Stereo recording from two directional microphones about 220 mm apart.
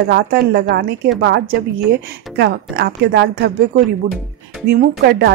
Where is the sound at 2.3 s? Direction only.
50° right (ahead or behind).